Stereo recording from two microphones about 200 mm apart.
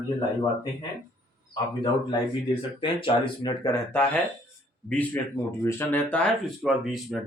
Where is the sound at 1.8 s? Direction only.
25° left (ahead or behind).